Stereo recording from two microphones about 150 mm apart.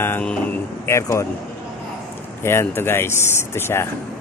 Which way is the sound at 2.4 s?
15° left (ahead or behind).